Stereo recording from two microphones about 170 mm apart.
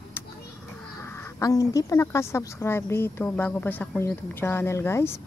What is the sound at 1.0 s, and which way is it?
Speech, 15° left (ahead or behind).